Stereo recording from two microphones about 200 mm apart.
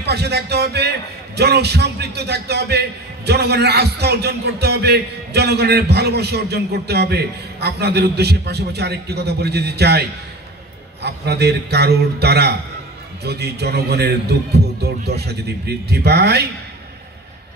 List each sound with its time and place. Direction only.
0.0 s a man's voice: 55° right (ahead or behind)